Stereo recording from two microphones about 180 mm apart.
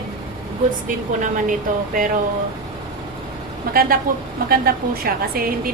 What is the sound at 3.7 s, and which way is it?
Speech, 55° right (ahead or behind).